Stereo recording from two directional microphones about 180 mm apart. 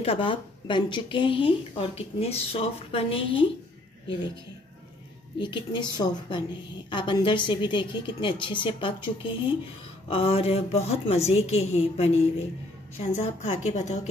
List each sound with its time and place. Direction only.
0.0 s speech: 30° left (ahead or behind)
5.4 s a woman's voice: 25° left (ahead or behind)
13.1 s speech: 40° left (ahead or behind)